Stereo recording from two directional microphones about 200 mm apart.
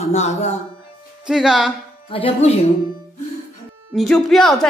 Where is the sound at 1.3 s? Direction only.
Centre (ahead or behind).